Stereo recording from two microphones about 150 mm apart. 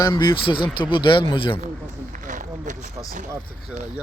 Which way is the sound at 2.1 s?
60° right (ahead or behind).